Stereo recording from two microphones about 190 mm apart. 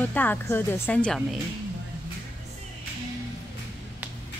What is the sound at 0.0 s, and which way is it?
Speech, 10° left (ahead or behind).